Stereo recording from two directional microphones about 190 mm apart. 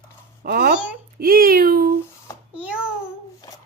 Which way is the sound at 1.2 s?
50° right (ahead or behind).